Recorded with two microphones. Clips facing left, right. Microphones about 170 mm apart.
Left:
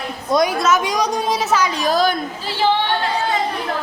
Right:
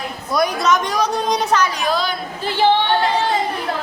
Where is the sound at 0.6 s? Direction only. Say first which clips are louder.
Even; 5° left (ahead or behind).